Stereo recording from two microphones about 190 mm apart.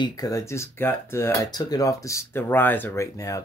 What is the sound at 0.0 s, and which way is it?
Speech, 20° left (ahead or behind).